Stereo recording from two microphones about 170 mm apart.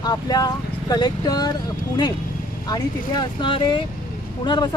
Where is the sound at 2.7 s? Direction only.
25° left (ahead or behind).